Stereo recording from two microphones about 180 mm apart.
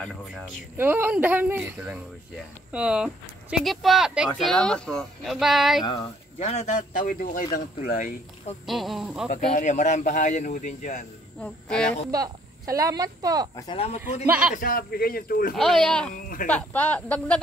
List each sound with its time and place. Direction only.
0.7 s speech: 10° right (ahead or behind)
6.4 s speech: 35° left (ahead or behind)
8.6 s speech: centre (ahead or behind)
9.3 s speech: 45° left (ahead or behind)
11.4 s speech: 5° left (ahead or behind)
12.1 s a woman's voice: 20° right (ahead or behind)
13.6 s speech: 30° left (ahead or behind)
14.2 s speech: 10° right (ahead or behind)
14.5 s speech: 50° left (ahead or behind)
15.5 s speech: centre (ahead or behind)
16.2 s speech: 50° left (ahead or behind)
16.4 s speech: 5° left (ahead or behind)